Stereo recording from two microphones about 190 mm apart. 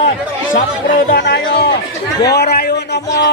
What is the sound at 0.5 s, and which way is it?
A man's voice, 50° left (ahead or behind).